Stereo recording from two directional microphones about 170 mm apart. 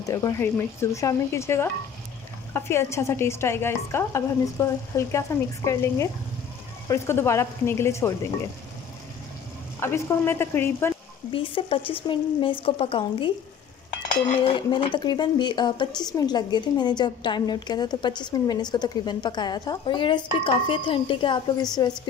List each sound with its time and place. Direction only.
0.0 s speech: 20° left (ahead or behind)
9.8 s speech: 15° left (ahead or behind)
11.3 s speech: 30° left (ahead or behind)
14.3 s speech: 30° left (ahead or behind)